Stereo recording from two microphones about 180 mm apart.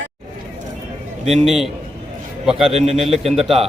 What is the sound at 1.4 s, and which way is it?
A man's voice, centre (ahead or behind).